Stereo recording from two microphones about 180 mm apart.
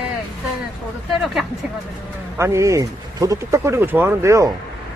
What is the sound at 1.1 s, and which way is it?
Speech, centre (ahead or behind).